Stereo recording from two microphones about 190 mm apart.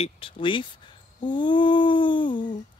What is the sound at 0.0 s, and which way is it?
Speech, 30° left (ahead or behind).